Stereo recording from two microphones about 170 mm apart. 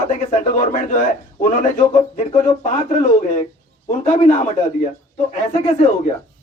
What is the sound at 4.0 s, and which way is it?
Speech, 40° left (ahead or behind).